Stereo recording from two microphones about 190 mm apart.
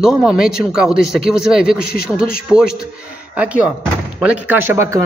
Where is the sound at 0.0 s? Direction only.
5° right (ahead or behind).